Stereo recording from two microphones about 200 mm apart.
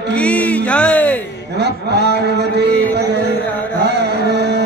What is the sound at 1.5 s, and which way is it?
A man's voice, 55° right (ahead or behind).